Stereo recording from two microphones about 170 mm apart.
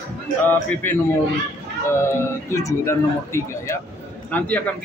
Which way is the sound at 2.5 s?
20° left (ahead or behind).